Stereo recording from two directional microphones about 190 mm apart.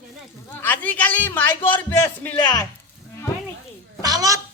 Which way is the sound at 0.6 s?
10° left (ahead or behind).